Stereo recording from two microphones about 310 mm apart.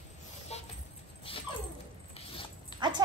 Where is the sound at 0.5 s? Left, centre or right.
Centre.